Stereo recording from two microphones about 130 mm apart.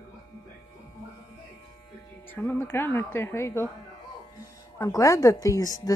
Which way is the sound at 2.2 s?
15° left (ahead or behind).